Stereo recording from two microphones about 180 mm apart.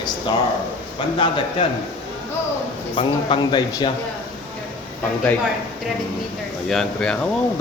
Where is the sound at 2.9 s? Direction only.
25° left (ahead or behind).